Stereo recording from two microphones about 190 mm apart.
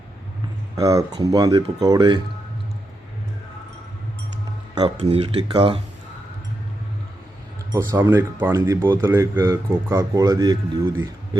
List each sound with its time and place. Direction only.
0.8 s speech: 20° right (ahead or behind)
4.7 s speech: 20° right (ahead or behind)
7.7 s speech: 15° right (ahead or behind)